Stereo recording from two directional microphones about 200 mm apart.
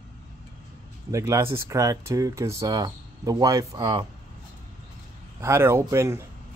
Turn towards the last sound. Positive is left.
turn(degrees=-15)  # may be behind; listen again after turning